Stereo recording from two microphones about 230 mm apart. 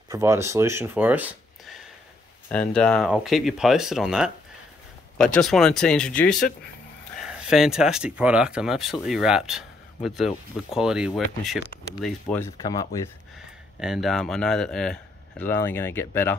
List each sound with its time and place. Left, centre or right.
0.1 s speech: centre
2.5 s speech: centre
13.7 s speech: centre